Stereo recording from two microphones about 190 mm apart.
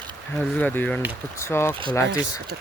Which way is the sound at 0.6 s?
10° left (ahead or behind).